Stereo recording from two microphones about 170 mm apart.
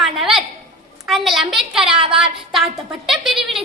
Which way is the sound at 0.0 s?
Centre (ahead or behind).